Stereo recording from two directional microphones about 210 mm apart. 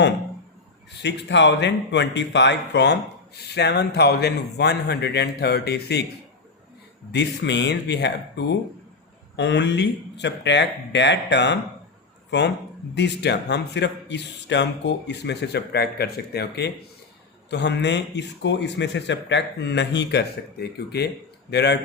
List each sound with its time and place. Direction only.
1.0 s speech: 55° left (ahead or behind)
7.1 s a man's voice: 55° left (ahead or behind)
12.9 s a man's voice: 55° left (ahead or behind)